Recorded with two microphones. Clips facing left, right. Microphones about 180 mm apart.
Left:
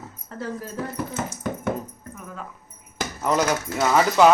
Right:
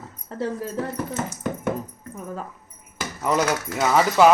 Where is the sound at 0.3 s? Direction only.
30° right (ahead or behind).